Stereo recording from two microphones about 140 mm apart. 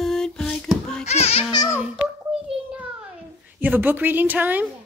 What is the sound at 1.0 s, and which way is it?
Music, 50° left (ahead or behind).